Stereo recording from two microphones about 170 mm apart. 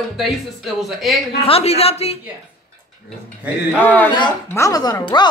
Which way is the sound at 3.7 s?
10° left (ahead or behind).